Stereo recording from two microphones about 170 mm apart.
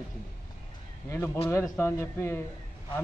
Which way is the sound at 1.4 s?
15° left (ahead or behind).